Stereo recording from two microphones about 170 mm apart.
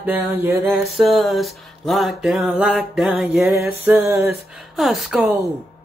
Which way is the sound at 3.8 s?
15° right (ahead or behind).